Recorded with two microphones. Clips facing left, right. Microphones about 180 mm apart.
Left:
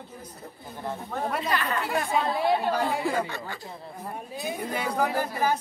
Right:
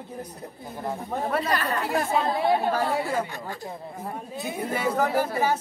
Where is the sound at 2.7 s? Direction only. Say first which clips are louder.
Right 1 dB; centre (ahead or behind).